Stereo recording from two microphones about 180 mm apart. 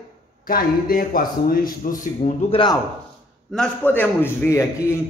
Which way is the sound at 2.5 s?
25° left (ahead or behind).